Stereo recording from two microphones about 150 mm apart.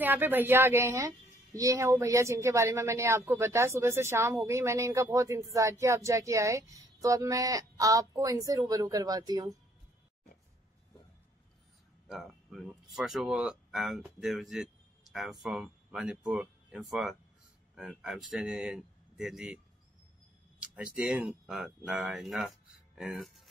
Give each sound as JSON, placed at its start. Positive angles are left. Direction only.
{"t": 0.0, "sound": "a woman's voice", "side_deg": -10}
{"t": 12.1, "sound": "speech", "side_deg": 0}
{"t": 20.6, "sound": "speech", "side_deg": -5}